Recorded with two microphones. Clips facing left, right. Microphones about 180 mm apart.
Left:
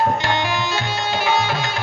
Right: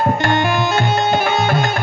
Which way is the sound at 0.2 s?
55° right (ahead or behind).